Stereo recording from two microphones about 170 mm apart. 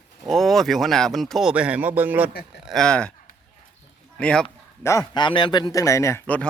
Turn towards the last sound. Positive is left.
turn(degrees=10)  # may be behind; listen again after turning